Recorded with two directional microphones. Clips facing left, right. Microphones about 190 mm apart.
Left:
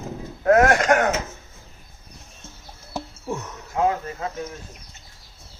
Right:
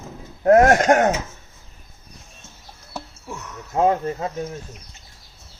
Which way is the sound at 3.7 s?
35° right (ahead or behind).